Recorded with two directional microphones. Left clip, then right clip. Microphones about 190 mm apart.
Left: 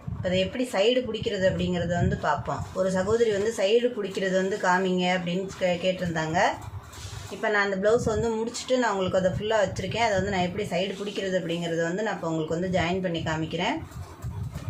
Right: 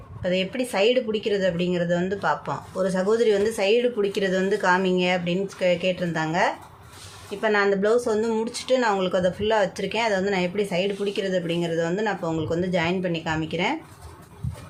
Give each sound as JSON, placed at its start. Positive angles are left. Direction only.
{"t": 0.2, "sound": "speech", "side_deg": -50}